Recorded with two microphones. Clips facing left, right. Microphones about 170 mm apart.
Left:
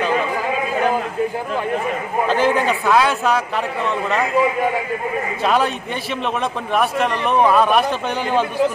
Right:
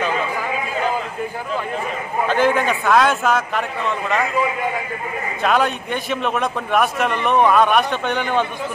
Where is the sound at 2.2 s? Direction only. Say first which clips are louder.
Even; centre (ahead or behind).